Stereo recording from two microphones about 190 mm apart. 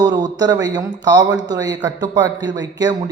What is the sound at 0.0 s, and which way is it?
Speech, 20° right (ahead or behind).